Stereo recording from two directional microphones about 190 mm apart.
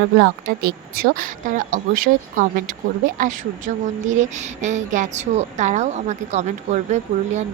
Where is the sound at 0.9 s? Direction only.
45° right (ahead or behind).